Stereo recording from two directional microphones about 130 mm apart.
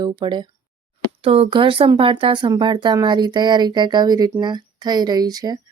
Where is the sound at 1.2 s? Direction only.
45° right (ahead or behind).